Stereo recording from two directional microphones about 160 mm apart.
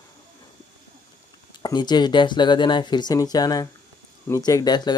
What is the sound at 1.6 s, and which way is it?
Speech, 25° left (ahead or behind).